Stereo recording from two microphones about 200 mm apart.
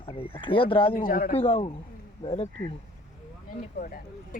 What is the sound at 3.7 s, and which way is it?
Speech, 45° left (ahead or behind).